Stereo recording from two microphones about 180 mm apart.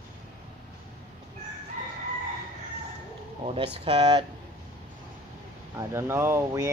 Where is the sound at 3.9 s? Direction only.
30° right (ahead or behind).